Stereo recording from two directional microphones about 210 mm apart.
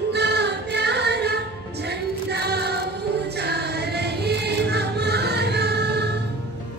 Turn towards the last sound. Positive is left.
turn(degrees=-50)  # may be behind; listen again after turning